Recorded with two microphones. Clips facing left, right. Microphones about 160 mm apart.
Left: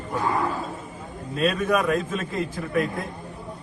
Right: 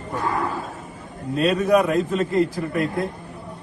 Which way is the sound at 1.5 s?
Centre (ahead or behind).